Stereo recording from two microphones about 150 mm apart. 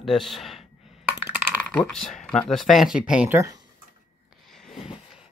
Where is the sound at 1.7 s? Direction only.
5° left (ahead or behind).